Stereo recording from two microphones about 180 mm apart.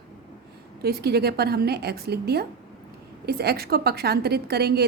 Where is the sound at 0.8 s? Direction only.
60° right (ahead or behind).